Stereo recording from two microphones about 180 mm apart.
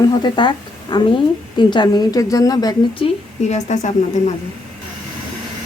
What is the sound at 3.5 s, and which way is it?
Speech, 40° left (ahead or behind).